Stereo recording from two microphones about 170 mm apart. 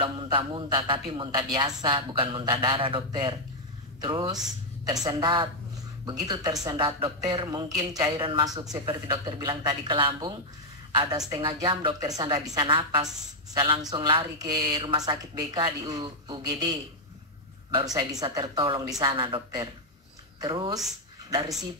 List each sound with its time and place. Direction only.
0.0 s a woman's voice: 30° right (ahead or behind)
17.7 s a woman's voice: 20° right (ahead or behind)